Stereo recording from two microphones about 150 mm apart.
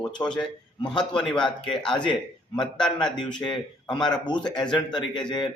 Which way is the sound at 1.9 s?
30° left (ahead or behind).